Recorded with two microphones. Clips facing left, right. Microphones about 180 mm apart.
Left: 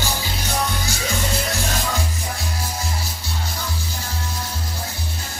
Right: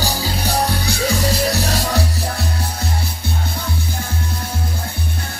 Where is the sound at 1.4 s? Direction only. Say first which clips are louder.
Right 6 dB; 65° right (ahead or behind).